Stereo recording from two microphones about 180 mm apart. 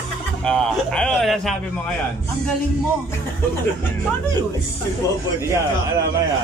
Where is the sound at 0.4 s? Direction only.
5° left (ahead or behind).